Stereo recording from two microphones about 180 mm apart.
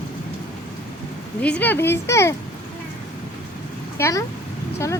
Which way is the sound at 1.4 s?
10° left (ahead or behind).